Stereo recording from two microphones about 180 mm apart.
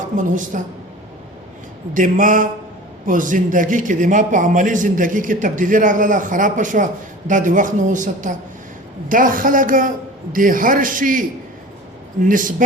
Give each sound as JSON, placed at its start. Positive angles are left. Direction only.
{"t": 0.2, "sound": "a man's voice", "side_deg": -45}
{"t": 1.9, "sound": "a man's voice", "side_deg": -45}